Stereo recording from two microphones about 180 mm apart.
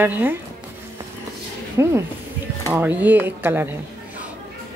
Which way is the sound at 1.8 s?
15° right (ahead or behind).